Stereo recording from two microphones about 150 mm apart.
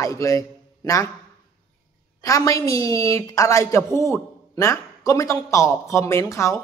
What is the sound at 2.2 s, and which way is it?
A woman's voice, 25° left (ahead or behind).